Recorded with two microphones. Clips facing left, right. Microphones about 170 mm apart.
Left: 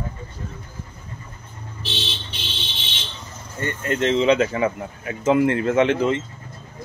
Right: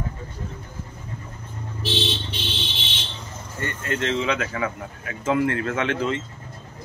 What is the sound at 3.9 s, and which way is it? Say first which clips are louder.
Speech: left 6 dB; 20° left (ahead or behind).